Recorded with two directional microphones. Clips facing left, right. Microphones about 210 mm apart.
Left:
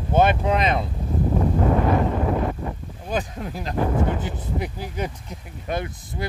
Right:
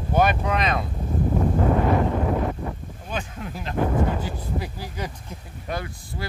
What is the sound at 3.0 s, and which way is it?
Speech, 40° left (ahead or behind).